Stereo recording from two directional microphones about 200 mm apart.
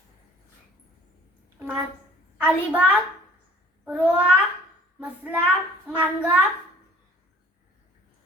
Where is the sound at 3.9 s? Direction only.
5° right (ahead or behind).